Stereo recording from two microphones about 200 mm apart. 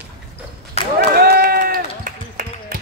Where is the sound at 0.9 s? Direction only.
50° right (ahead or behind).